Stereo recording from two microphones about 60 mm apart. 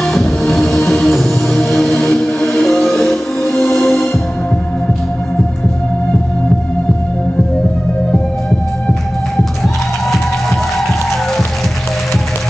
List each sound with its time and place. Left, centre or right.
0.0 s music: centre
3.4 s music: left